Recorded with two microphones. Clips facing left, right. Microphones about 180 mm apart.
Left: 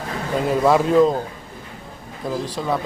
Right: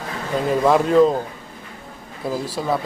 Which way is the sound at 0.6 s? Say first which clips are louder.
Right 1 dB; centre (ahead or behind).